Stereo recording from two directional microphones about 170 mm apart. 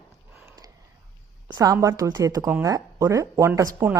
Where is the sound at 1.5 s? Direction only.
20° right (ahead or behind).